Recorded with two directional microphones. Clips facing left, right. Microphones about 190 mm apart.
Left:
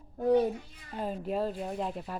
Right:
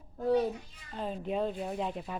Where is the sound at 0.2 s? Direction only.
15° left (ahead or behind).